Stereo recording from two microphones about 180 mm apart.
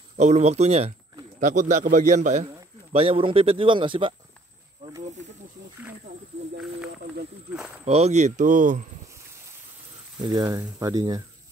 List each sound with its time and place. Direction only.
0.2 s a man's voice: 40° right (ahead or behind)
7.5 s a sound: 5° right (ahead or behind)
7.8 s speech: 35° right (ahead or behind)
10.2 s speech: 20° right (ahead or behind)